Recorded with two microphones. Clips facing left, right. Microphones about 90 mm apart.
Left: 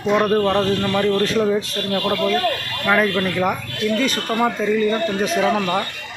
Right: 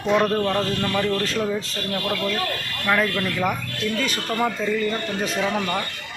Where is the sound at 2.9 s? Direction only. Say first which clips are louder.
Left 4 dB; 15° left (ahead or behind).